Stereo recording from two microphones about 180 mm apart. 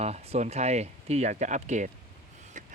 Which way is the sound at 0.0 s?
35° right (ahead or behind).